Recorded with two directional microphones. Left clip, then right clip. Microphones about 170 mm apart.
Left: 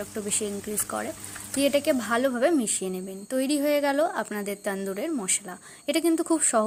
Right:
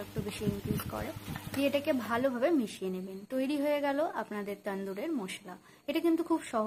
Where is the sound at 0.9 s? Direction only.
30° left (ahead or behind).